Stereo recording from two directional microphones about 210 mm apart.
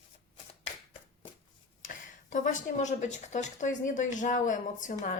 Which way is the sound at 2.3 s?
35° left (ahead or behind).